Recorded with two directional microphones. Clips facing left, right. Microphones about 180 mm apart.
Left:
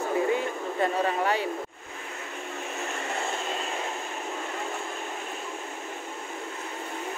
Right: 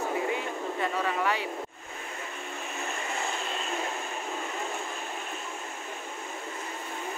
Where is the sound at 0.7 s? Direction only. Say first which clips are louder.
Left 5 dB; 40° left (ahead or behind).